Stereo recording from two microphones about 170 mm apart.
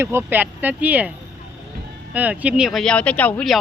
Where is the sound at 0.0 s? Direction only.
15° right (ahead or behind).